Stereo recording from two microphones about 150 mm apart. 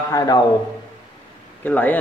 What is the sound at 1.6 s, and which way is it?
Speech, 10° left (ahead or behind).